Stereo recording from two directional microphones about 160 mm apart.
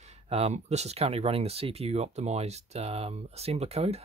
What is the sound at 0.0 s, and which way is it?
Speech, 40° right (ahead or behind).